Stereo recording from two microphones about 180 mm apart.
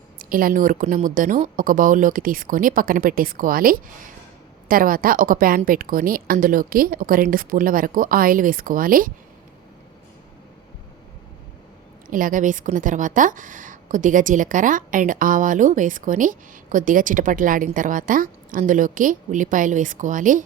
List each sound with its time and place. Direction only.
0.2 s a woman's voice: 50° right (ahead or behind)
12.1 s a woman's voice: 45° right (ahead or behind)